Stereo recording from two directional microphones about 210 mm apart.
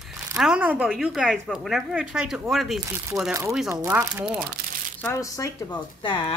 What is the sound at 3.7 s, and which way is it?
Speech, 15° right (ahead or behind).